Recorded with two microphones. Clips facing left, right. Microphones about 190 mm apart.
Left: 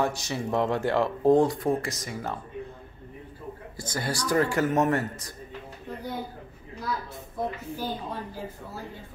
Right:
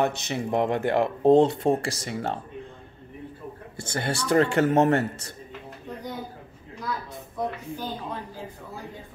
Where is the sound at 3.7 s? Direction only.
25° right (ahead or behind).